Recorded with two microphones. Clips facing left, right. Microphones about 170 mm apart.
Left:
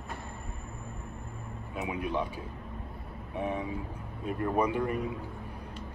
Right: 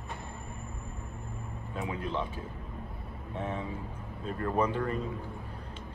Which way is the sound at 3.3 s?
15° left (ahead or behind).